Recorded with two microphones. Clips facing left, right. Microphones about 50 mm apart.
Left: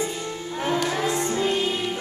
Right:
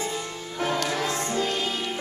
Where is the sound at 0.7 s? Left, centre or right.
Centre.